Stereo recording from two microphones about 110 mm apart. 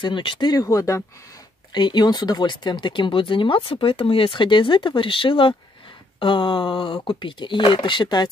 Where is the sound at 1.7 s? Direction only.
45° left (ahead or behind).